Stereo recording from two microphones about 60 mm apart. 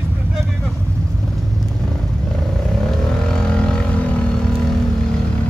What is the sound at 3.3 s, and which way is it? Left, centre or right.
Vehicle, centre.